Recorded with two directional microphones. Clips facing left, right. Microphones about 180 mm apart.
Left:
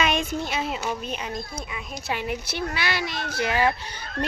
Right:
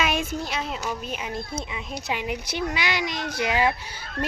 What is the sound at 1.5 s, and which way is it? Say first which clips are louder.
A woman's voice: right 3 dB; 20° right (ahead or behind).